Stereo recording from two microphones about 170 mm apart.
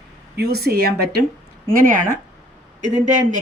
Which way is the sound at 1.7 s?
55° right (ahead or behind).